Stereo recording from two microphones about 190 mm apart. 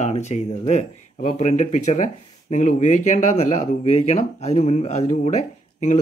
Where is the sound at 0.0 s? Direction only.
35° left (ahead or behind).